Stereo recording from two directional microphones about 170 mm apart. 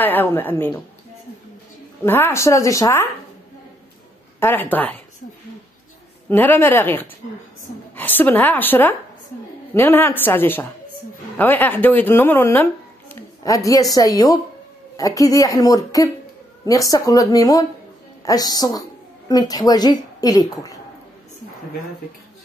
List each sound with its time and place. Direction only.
0.0 s speech: 10° left (ahead or behind)
2.0 s speech: 10° left (ahead or behind)
4.4 s speech: 10° left (ahead or behind)
6.2 s a woman's voice: 10° left (ahead or behind)